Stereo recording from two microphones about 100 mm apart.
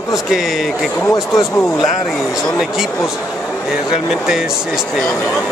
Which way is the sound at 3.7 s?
5° right (ahead or behind).